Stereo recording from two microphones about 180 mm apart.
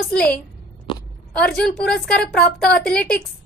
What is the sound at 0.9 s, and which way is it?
Biting, 25° left (ahead or behind).